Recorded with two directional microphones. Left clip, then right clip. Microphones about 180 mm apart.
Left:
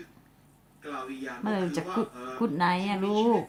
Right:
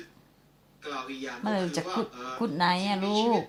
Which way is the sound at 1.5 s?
20° right (ahead or behind).